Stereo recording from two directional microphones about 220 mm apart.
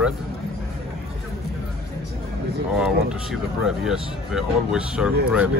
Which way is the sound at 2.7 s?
5° right (ahead or behind).